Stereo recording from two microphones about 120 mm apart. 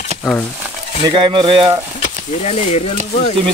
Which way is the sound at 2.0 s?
70° left (ahead or behind).